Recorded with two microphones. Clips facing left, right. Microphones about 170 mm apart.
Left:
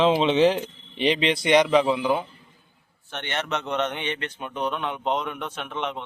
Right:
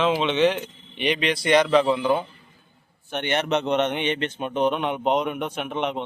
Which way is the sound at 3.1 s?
15° right (ahead or behind).